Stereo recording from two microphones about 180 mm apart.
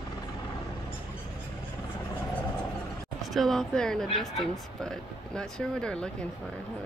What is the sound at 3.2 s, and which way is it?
Speech, centre (ahead or behind).